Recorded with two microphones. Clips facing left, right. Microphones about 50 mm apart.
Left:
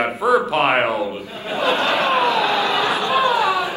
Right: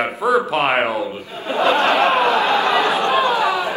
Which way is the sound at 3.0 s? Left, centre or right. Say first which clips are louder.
Right 1 dB; right.